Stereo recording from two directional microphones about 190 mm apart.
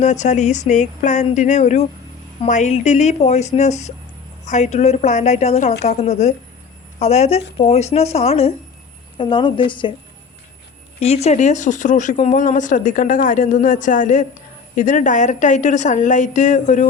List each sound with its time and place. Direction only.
0.0 s a woman's voice: 40° left (ahead or behind)
11.0 s speech: 35° left (ahead or behind)